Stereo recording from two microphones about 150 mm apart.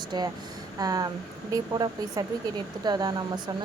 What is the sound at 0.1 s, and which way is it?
A woman's voice, 30° right (ahead or behind).